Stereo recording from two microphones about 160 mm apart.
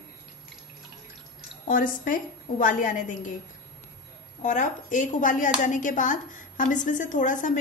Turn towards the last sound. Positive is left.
turn(degrees=55)  # may be behind; listen again after turning